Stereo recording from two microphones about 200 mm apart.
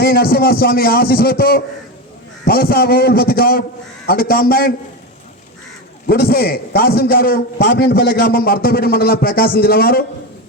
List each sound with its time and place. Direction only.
0.0 s a man's voice: 50° left (ahead or behind)
6.1 s a man's voice: 50° left (ahead or behind)